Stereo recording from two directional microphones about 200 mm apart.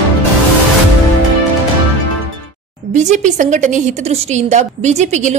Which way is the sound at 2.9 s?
35° right (ahead or behind).